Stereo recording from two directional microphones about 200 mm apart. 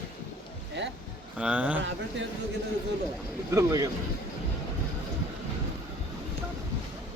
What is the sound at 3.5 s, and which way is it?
Speech, 15° right (ahead or behind).